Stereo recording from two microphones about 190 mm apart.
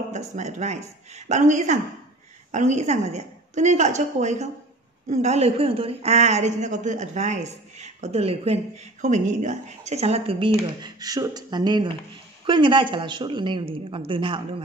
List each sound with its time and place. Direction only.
0.1 s a woman's voice: 40° right (ahead or behind)
10.8 s speech: 20° right (ahead or behind)